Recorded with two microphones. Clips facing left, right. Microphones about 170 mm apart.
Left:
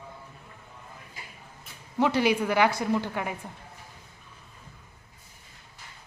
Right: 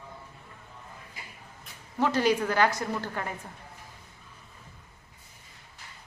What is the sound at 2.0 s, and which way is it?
A woman's voice, 15° left (ahead or behind).